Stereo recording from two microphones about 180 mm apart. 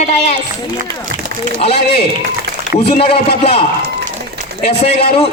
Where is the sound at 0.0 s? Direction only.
40° left (ahead or behind).